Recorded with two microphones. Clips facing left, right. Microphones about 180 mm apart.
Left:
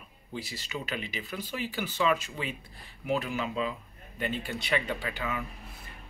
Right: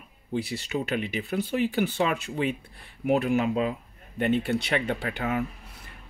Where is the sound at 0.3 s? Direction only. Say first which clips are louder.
Right 8 dB; 65° right (ahead or behind).